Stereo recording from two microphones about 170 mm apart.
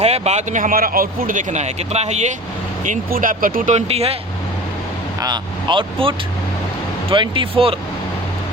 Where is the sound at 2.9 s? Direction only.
50° right (ahead or behind); by 4.1 s 35° right (ahead or behind).